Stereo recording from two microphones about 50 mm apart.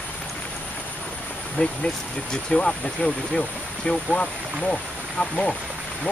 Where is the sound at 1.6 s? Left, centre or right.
Left.